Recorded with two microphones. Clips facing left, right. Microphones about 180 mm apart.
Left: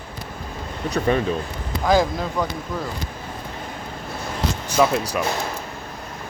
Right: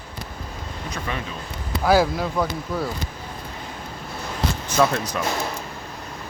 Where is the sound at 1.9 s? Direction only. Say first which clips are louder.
Even; 5° right (ahead or behind).